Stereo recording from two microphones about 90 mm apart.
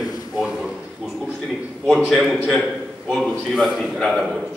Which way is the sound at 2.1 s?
Centre (ahead or behind).